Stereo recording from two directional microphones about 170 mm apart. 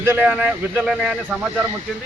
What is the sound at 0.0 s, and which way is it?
Speech, 10° right (ahead or behind).